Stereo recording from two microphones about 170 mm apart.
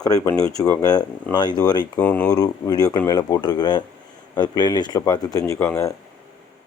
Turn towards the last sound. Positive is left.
turn(degrees=15)  # may be behind; listen again after turning